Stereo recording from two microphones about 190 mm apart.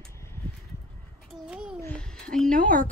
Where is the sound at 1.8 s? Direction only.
10° left (ahead or behind).